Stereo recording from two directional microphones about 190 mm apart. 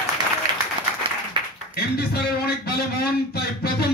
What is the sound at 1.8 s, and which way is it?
A man's voice, 55° left (ahead or behind).